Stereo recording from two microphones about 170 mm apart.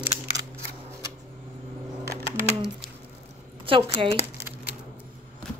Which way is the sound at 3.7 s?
30° right (ahead or behind).